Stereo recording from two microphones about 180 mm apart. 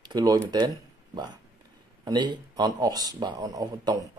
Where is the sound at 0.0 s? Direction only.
20° right (ahead or behind).